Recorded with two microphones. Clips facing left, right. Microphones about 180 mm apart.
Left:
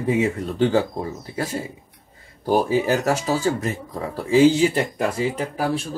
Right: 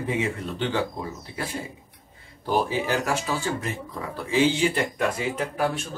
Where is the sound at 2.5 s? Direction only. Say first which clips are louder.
Left 5 dB; 40° left (ahead or behind).